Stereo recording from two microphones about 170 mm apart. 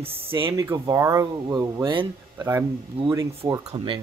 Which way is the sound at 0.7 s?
15° right (ahead or behind).